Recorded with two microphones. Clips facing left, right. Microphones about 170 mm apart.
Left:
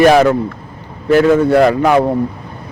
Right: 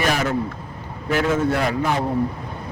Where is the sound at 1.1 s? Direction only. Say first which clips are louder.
Left 10 dB; 65° left (ahead or behind).